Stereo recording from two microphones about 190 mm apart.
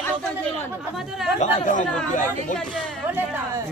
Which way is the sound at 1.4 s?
40° left (ahead or behind).